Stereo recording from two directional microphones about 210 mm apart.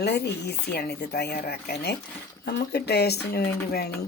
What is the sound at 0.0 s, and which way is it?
Speech, 50° left (ahead or behind).